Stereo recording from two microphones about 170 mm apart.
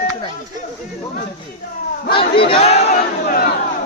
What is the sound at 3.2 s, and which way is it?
Chatter, 60° left (ahead or behind).